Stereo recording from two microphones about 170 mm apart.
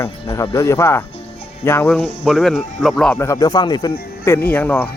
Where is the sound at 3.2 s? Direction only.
20° left (ahead or behind).